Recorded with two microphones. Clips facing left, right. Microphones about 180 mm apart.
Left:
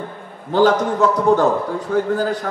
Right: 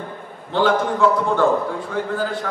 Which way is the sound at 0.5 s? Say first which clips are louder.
Left 3 dB; 40° left (ahead or behind).